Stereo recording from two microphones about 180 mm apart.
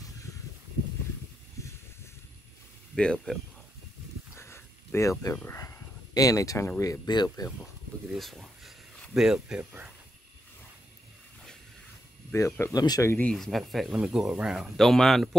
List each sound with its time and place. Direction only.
3.0 s speech: 5° left (ahead or behind)
4.4 s a sound: 15° left (ahead or behind)
5.2 s speech: 15° left (ahead or behind)
8.2 s speech: centre (ahead or behind)
12.3 s speech: 15° left (ahead or behind)
13.3 s speech: centre (ahead or behind)